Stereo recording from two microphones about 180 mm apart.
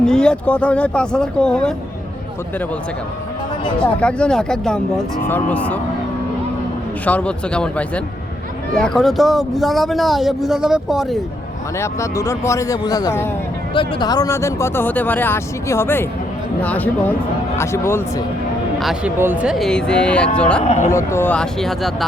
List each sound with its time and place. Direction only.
0.0 s speech: 5° left (ahead or behind)
3.8 s speech: 5° left (ahead or behind)
7.0 s speech: 10° left (ahead or behind)
11.8 s speech: 15° left (ahead or behind)
18.8 s speech: centre (ahead or behind)
20.7 s speech: 40° left (ahead or behind)
20.9 s speech: 15° left (ahead or behind)